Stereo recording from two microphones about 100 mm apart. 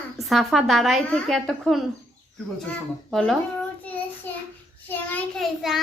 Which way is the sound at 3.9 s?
15° left (ahead or behind).